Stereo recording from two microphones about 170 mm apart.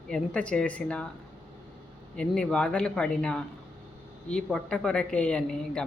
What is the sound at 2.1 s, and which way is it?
Speech, 5° left (ahead or behind).